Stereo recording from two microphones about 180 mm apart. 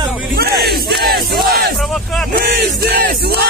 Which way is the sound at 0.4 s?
60° right (ahead or behind).